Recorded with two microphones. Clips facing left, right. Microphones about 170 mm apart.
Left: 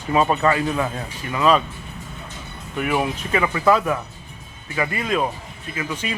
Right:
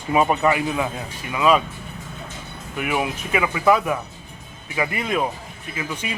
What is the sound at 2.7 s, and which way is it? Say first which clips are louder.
Speech: left 2 dB; 5° right (ahead or behind).